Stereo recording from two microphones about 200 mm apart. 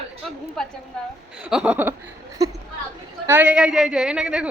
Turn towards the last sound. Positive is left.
turn(degrees=-5)  # may be behind; listen again after turning